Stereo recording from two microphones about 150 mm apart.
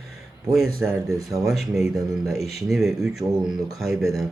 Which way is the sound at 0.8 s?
10° right (ahead or behind).